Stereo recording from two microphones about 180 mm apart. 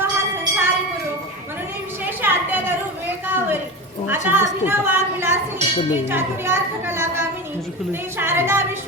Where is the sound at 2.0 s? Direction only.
10° right (ahead or behind).